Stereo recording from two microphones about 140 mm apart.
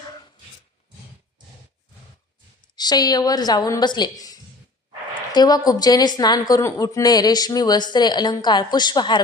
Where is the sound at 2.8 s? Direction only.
30° left (ahead or behind).